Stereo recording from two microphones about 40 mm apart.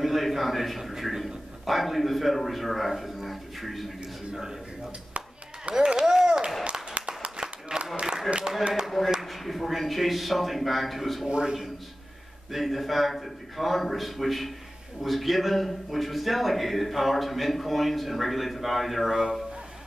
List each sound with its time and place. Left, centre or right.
0.0 s a man's voice: centre
4.3 s speech: centre
5.7 s a sound: right
6.6 s clapping: right
7.8 s a sound: right
9.2 s a man's voice: centre
11.2 s a man's voice: right
12.4 s a man's voice: centre